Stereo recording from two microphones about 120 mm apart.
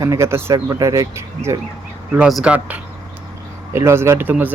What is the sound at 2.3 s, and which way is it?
Speech, centre (ahead or behind).